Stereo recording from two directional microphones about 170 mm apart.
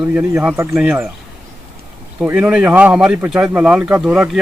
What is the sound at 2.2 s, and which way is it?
Speech, 10° right (ahead or behind).